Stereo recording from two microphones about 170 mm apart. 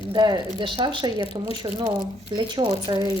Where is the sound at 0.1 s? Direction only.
25° right (ahead or behind).